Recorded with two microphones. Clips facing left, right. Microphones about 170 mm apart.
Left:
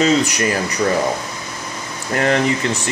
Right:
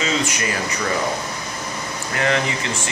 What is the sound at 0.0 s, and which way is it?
Speech, 40° left (ahead or behind).